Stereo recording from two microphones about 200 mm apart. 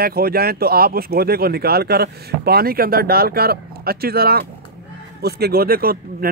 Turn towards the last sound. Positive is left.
turn(degrees=-50)  # may be behind; listen again after turning